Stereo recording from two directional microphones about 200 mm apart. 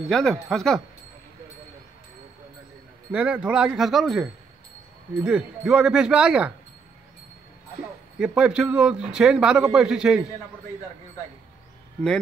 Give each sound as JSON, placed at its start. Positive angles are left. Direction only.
{"t": 0.1, "sound": "a man's voice", "side_deg": 0}
{"t": 3.1, "sound": "a man's voice", "side_deg": -5}
{"t": 8.2, "sound": "a man's voice", "side_deg": -5}